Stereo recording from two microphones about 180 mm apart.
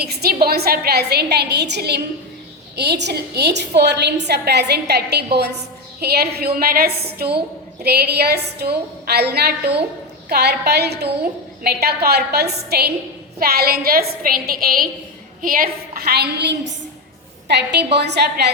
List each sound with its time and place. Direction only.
0.0 s a woman's voice: 60° right (ahead or behind)